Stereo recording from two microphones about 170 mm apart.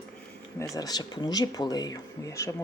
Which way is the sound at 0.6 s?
20° left (ahead or behind).